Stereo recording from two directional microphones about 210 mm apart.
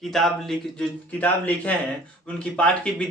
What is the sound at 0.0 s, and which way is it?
A man's voice, centre (ahead or behind).